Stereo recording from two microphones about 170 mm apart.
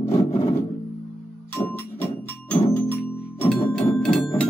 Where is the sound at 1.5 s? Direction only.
10° left (ahead or behind).